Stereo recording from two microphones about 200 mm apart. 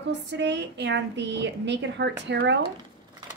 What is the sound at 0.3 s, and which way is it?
A woman's voice, 60° right (ahead or behind).